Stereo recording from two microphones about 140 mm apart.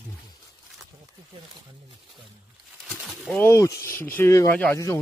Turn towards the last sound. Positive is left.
turn(degrees=10)  # may be behind; listen again after turning